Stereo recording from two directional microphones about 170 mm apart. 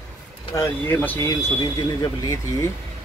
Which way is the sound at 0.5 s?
20° left (ahead or behind).